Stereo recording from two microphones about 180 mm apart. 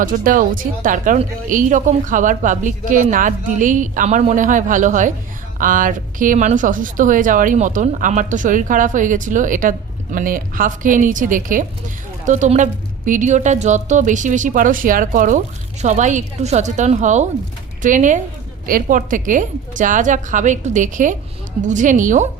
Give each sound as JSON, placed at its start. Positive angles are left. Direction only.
{"t": 0.0, "sound": "a woman's voice", "side_deg": -50}